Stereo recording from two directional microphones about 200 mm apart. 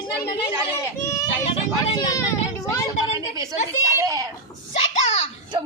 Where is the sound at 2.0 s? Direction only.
15° left (ahead or behind).